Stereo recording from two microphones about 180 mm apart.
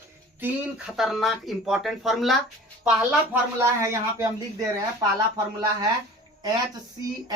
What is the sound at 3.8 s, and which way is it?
Speech, 15° right (ahead or behind).